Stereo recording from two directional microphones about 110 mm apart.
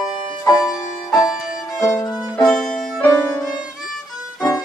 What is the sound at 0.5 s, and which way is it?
Music, 35° left (ahead or behind).